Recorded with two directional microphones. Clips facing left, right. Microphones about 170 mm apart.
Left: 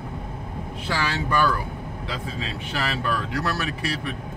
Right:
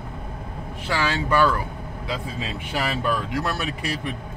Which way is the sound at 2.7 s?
15° right (ahead or behind).